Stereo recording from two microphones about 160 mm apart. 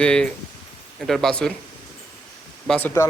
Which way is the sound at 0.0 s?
5° left (ahead or behind).